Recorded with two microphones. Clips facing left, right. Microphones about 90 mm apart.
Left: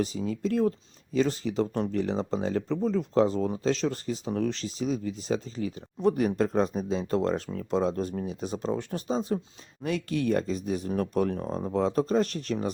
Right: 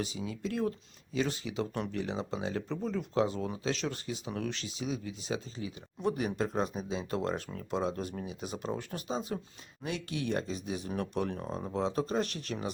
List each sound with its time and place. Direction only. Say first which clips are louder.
0.0 s speech: left 7 dB; 45° left (ahead or behind)
9.8 s speech: left 7 dB; 45° left (ahead or behind)